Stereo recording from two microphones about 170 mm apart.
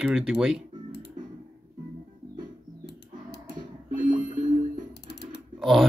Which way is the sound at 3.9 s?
55° right (ahead or behind).